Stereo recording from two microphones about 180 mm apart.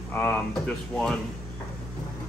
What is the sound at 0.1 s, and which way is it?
Speech, 10° left (ahead or behind).